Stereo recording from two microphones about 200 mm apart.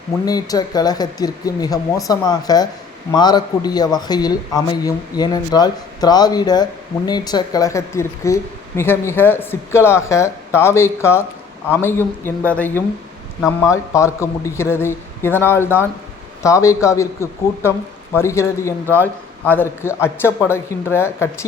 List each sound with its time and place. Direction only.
0.3 s speech: 20° left (ahead or behind)